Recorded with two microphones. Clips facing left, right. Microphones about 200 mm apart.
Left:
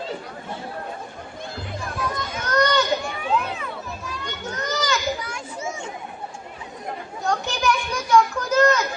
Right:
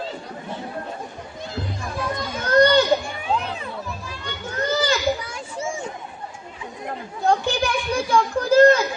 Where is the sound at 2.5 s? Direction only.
30° right (ahead or behind).